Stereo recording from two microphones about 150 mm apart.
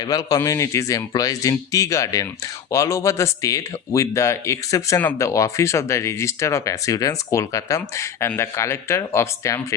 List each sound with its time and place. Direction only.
0.0 s speech: 25° left (ahead or behind)